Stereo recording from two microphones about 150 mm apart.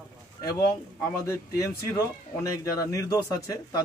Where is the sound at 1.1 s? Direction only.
20° left (ahead or behind).